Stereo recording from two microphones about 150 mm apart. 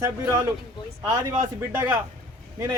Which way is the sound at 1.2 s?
20° right (ahead or behind).